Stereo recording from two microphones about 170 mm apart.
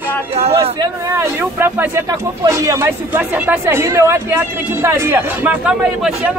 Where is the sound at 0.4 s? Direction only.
35° right (ahead or behind).